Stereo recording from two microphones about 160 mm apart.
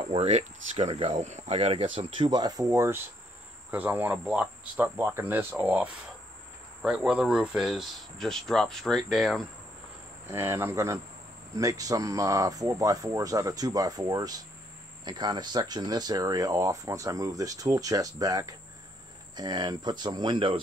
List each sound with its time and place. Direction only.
0.1 s speech: 45° right (ahead or behind); by 9.5 s centre (ahead or behind)
10.2 s speech: 15° right (ahead or behind); by 20.6 s 30° right (ahead or behind)